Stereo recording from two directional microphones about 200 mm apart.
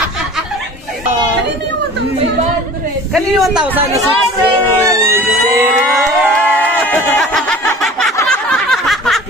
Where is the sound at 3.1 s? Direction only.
Centre (ahead or behind).